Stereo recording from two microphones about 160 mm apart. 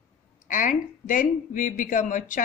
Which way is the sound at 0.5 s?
55° left (ahead or behind).